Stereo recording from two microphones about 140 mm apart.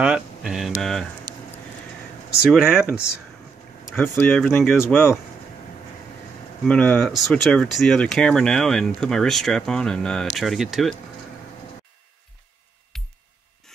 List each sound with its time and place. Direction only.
0.0 s speech: 5° right (ahead or behind)
1.3 s a sound: 30° right (ahead or behind)
2.5 s speech: 5° right (ahead or behind)
3.9 s speech: 15° left (ahead or behind)
6.6 s speech: 5° left (ahead or behind)
12.9 s music: centre (ahead or behind)